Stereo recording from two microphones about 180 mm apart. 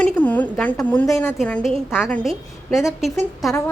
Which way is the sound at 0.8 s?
10° left (ahead or behind).